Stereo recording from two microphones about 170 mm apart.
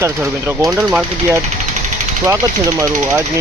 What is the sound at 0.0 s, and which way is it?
Speech, 15° right (ahead or behind).